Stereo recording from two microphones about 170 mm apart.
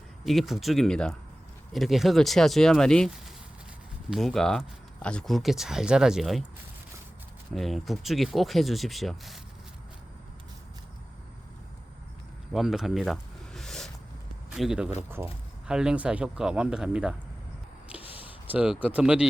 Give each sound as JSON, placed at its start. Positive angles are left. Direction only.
{"t": 0.3, "sound": "speech", "side_deg": 0}
{"t": 7.5, "sound": "speech", "side_deg": 0}
{"t": 12.5, "sound": "a sound", "side_deg": 0}
{"t": 14.5, "sound": "speech", "side_deg": -5}
{"t": 18.0, "sound": "a sound", "side_deg": 35}
{"t": 18.4, "sound": "speech", "side_deg": -5}